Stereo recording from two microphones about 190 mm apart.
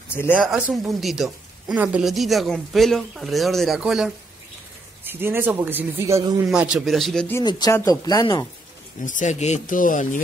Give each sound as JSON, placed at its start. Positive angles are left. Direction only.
{"t": 0.3, "sound": "a man's voice", "side_deg": -5}
{"t": 6.5, "sound": "speech", "side_deg": -5}
{"t": 7.4, "sound": "speech", "side_deg": 20}
{"t": 9.0, "sound": "speech", "side_deg": 40}